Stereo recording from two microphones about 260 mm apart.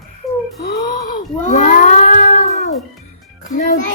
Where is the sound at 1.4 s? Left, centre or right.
Left.